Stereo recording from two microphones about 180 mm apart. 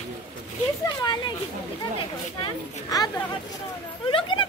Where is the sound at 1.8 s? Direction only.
25° left (ahead or behind).